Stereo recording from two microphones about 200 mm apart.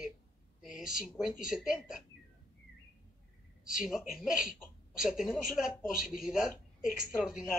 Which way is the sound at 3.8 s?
Centre (ahead or behind).